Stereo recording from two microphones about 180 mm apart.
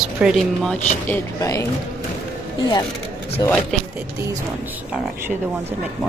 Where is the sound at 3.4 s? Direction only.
20° left (ahead or behind).